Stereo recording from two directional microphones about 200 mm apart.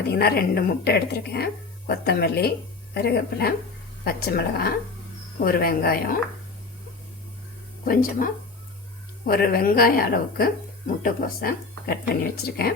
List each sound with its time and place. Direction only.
0.1 s a woman's voice: 50° left (ahead or behind)
7.9 s speech: 45° left (ahead or behind)